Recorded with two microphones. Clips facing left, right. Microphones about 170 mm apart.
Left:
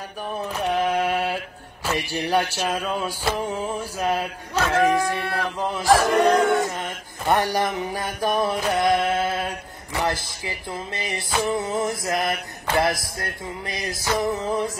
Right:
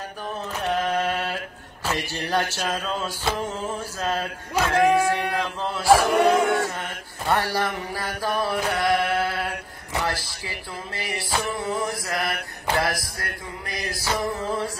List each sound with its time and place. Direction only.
0.4 s mantra: 10° left (ahead or behind)
1.9 s music: 10° left (ahead or behind)
4.6 s speech: 15° right (ahead or behind)
5.6 s music: 15° left (ahead or behind)
5.9 s speech: 10° right (ahead or behind)
6.6 s music: 15° left (ahead or behind)
8.2 s mantra: 20° left (ahead or behind)
10.0 s music: 20° left (ahead or behind)